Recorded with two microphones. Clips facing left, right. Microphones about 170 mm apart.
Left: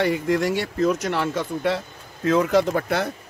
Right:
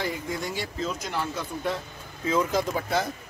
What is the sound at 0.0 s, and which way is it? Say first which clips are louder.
Speech: left 10 dB; 80° left.